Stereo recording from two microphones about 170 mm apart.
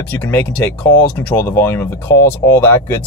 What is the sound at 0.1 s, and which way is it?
Speech, 10° left (ahead or behind).